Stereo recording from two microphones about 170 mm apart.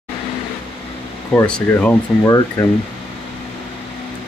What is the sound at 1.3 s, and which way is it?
Speech, 10° left (ahead or behind).